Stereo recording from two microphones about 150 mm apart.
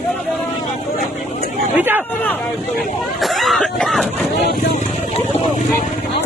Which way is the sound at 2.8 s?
Centre (ahead or behind).